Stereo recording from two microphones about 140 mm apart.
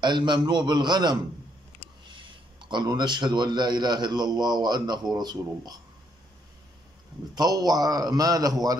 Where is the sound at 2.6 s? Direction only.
35° right (ahead or behind).